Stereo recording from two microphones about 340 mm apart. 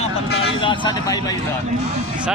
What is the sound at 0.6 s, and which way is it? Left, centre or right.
Speech, centre.